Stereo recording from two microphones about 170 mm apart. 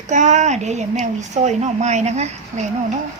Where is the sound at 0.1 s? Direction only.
45° right (ahead or behind).